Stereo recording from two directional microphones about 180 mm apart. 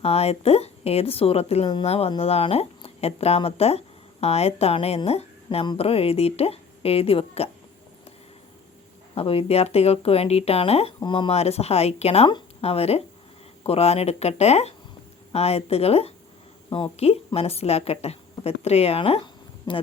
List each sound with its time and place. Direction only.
0.0 s a woman's voice: 35° left (ahead or behind)
9.1 s a woman's voice: 30° left (ahead or behind)